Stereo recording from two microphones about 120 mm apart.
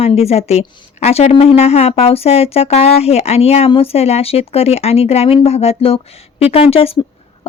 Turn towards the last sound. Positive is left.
turn(degrees=55)  # may be behind; listen again after turning